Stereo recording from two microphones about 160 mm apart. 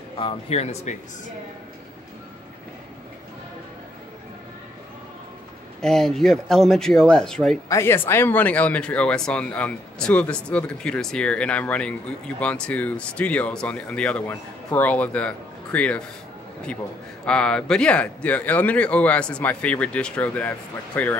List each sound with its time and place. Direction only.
0.2 s speech: 40° left (ahead or behind)
5.8 s speech: 5° left (ahead or behind)
7.6 s a man's voice: 15° left (ahead or behind)
17.2 s a man's voice: 5° left (ahead or behind)